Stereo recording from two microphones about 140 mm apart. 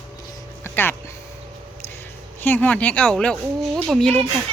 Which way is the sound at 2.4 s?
10° left (ahead or behind).